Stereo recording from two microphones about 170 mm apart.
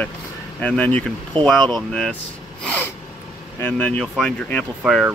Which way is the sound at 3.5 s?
10° left (ahead or behind).